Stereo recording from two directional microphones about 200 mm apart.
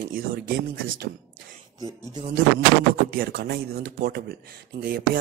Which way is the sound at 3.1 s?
50° right (ahead or behind).